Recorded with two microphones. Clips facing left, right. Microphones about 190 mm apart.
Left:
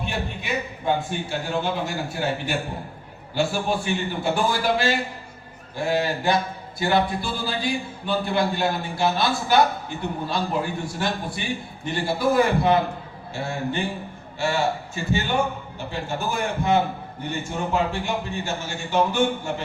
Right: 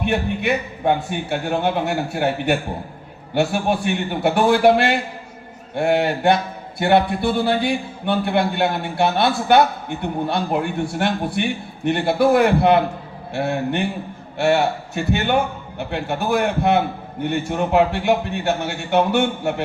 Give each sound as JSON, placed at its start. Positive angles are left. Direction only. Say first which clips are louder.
{"t": 0.0, "sound": "speech", "louder": "right 9 dB", "side_deg": -65}